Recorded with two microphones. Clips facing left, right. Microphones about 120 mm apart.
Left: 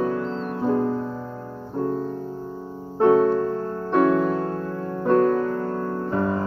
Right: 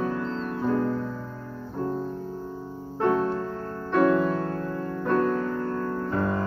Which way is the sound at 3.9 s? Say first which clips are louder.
Left 2 dB; 20° left (ahead or behind).